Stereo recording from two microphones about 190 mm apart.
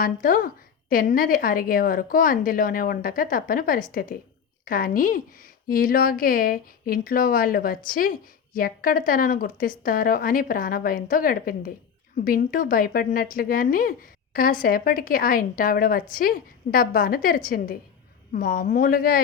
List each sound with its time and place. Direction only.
0.0 s speech: 50° left (ahead or behind)